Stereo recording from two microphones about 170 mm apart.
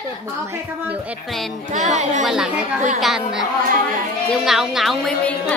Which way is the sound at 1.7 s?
45° right (ahead or behind).